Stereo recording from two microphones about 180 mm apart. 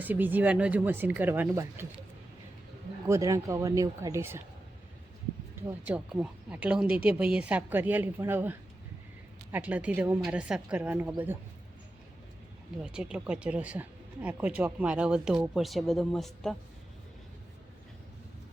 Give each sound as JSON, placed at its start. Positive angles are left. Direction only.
{"t": 0.0, "sound": "a woman's voice", "side_deg": -10}
{"t": 3.1, "sound": "a woman's voice", "side_deg": -15}
{"t": 5.8, "sound": "a woman's voice", "side_deg": -5}
{"t": 12.8, "sound": "speech", "side_deg": -5}